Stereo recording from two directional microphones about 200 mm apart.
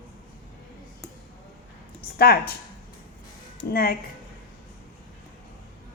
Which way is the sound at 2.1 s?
50° left (ahead or behind).